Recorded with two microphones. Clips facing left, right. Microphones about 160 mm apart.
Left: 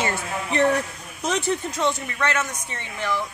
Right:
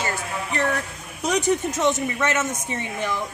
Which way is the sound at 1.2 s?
15° right (ahead or behind).